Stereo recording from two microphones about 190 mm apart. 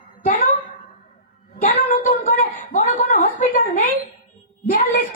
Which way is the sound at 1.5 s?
45° left (ahead or behind).